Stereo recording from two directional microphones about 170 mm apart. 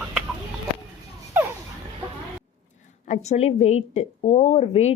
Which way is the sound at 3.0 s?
45° left (ahead or behind).